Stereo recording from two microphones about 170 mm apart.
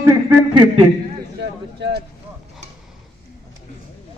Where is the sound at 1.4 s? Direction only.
80° right.